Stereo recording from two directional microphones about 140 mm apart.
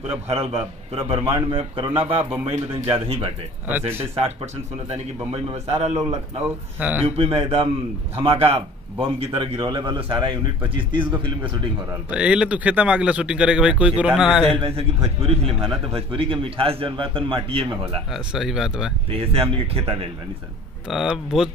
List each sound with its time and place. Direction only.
0.9 s a man's voice: 40° right (ahead or behind)
5.3 s speech: 45° right (ahead or behind)
6.4 s speech: 10° right (ahead or behind)
7.1 s a man's voice: 45° right (ahead or behind)
12.1 s speech: 10° right (ahead or behind)
14.6 s a man's voice: 45° right (ahead or behind)
18.1 s speech: 5° right (ahead or behind)
19.1 s speech: 45° right (ahead or behind)
20.9 s speech: centre (ahead or behind)